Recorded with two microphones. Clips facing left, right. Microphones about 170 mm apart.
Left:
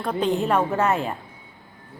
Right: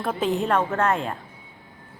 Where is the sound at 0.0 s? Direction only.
5° right (ahead or behind).